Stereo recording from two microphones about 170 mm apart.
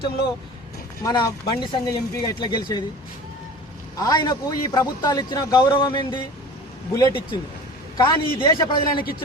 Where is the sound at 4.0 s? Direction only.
20° left (ahead or behind).